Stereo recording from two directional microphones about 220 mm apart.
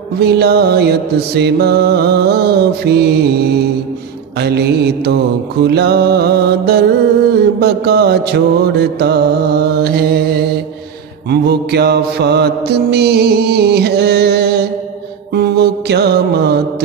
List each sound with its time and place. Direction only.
0.2 s mantra: 45° right (ahead or behind)
8.9 s music: 45° right (ahead or behind)
11.2 s mantra: 45° right (ahead or behind)